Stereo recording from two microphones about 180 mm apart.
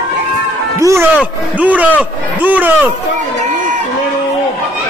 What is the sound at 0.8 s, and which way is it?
Speech, 15° right (ahead or behind).